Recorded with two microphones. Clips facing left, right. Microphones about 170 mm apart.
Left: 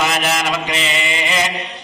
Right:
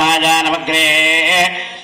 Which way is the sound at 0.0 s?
65° right (ahead or behind).